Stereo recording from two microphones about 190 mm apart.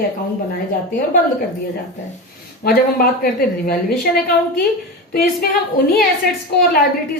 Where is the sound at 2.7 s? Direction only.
50° left (ahead or behind).